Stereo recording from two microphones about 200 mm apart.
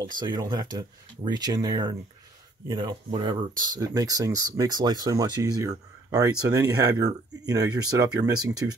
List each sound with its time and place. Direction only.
0.0 s speech: 20° right (ahead or behind)